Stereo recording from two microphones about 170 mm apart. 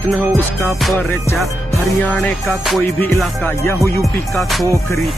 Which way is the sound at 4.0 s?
Centre (ahead or behind).